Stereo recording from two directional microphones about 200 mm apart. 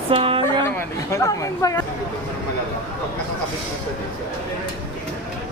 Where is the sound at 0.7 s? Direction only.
15° left (ahead or behind).